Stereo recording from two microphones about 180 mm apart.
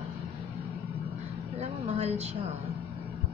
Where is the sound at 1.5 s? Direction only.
35° right (ahead or behind).